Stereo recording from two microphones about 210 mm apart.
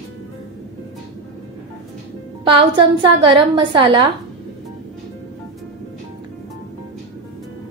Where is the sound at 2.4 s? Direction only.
25° right (ahead or behind).